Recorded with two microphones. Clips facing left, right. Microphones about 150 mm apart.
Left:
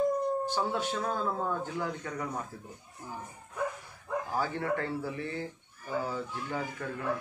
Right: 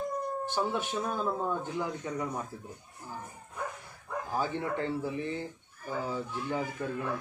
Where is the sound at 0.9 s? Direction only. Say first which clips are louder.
Even; 20° right (ahead or behind).